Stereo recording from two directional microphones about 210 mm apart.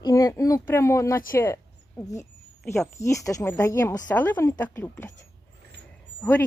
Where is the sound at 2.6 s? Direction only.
Centre (ahead or behind).